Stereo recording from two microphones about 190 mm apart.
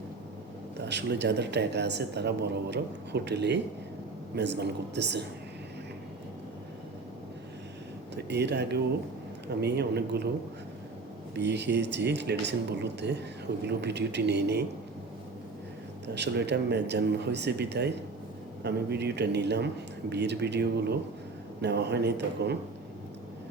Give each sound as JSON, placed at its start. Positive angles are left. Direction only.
{"t": 0.9, "sound": "a man's voice", "side_deg": -65}
{"t": 8.1, "sound": "a man's voice", "side_deg": -65}
{"t": 11.3, "sound": "a man's voice", "side_deg": -65}
{"t": 16.1, "sound": "a man's voice", "side_deg": -65}